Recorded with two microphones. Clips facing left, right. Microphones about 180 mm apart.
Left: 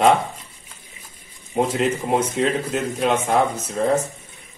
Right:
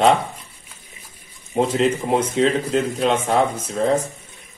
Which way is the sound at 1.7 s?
30° right (ahead or behind).